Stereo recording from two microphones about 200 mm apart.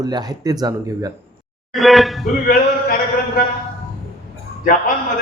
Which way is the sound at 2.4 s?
45° left (ahead or behind).